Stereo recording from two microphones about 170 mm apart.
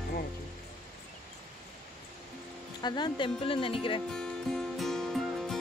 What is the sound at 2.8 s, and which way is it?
Speech, 25° left (ahead or behind).